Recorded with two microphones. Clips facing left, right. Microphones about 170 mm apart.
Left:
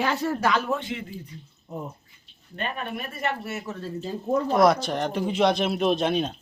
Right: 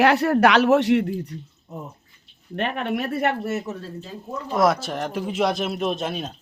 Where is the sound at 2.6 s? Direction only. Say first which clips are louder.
Right 7 dB; 75° right (ahead or behind).